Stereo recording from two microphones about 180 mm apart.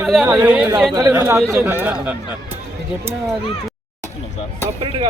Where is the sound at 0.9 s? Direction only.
15° right (ahead or behind).